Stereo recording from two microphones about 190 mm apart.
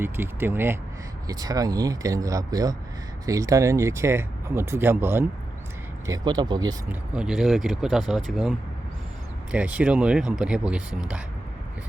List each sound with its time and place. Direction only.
0.0 s speech: 10° right (ahead or behind)
6.1 s speech: 20° right (ahead or behind)
6.8 s speech: 5° right (ahead or behind)